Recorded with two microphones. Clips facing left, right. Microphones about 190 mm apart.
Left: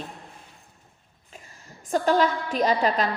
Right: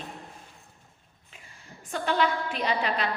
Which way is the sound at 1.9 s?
40° left (ahead or behind).